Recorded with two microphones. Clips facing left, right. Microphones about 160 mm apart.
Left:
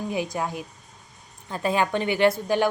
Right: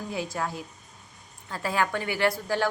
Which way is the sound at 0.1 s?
20° left (ahead or behind).